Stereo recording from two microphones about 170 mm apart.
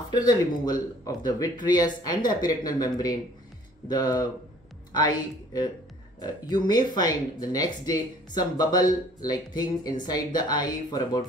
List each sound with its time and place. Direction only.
0.1 s a woman's voice: 25° left (ahead or behind)